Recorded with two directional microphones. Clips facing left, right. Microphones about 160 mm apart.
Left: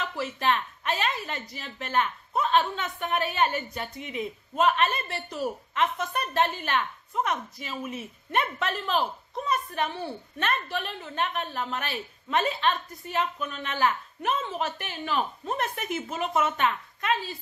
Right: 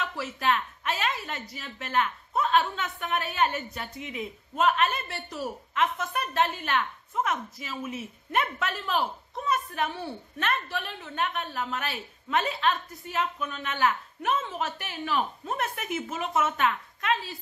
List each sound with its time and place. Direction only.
0.0 s a woman's voice: centre (ahead or behind)